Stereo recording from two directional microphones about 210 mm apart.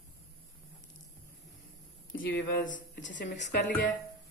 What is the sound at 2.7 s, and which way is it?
Speech, 60° left (ahead or behind).